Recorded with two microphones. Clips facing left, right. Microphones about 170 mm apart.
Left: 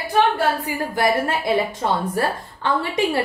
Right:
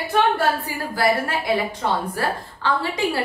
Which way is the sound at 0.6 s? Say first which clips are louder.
Left 1 dB; 20° left (ahead or behind).